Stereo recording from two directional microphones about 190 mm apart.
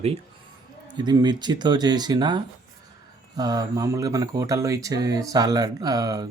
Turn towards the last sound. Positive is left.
turn(degrees=-20)  # may be behind; listen again after turning